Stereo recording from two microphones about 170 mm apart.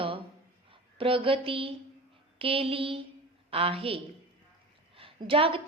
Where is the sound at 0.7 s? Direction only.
30° right (ahead or behind).